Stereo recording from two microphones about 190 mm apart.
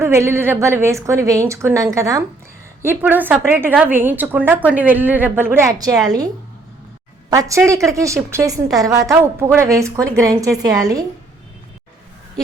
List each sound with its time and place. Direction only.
0.0 s a woman's voice: 15° right (ahead or behind)